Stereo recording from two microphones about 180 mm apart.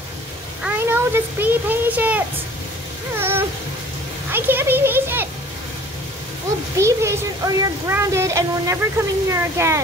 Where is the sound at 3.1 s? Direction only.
15° right (ahead or behind).